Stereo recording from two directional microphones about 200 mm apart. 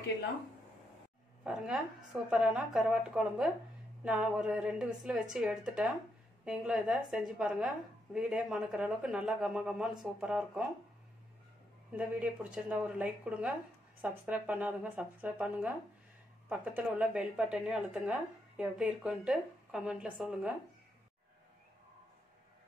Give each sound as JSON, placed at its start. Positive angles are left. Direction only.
{"t": 1.4, "sound": "a woman's voice", "side_deg": -5}
{"t": 12.0, "sound": "a woman's voice", "side_deg": -5}